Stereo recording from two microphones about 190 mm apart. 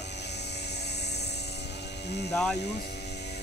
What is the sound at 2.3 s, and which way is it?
Speech, 5° left (ahead or behind).